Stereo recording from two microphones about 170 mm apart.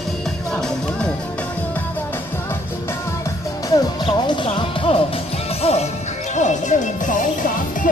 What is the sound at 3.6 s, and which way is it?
Music, 25° left (ahead or behind).